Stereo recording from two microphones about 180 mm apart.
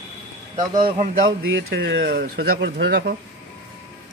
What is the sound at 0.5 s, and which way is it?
Speech, 25° right (ahead or behind).